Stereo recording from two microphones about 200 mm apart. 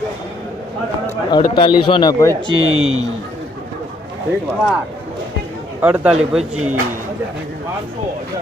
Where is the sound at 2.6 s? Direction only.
90° right.